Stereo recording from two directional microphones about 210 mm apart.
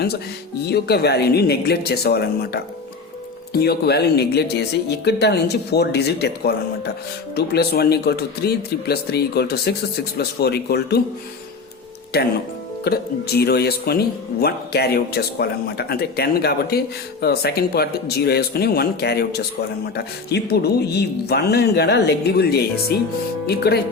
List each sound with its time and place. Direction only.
0.7 s speech: 50° left (ahead or behind)
12.1 s speech: 50° left (ahead or behind)